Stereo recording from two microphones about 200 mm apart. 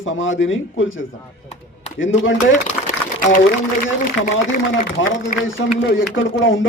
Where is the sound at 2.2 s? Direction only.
70° left (ahead or behind).